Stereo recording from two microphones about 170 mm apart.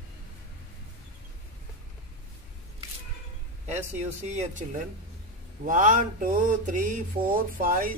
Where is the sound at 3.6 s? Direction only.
40° right (ahead or behind).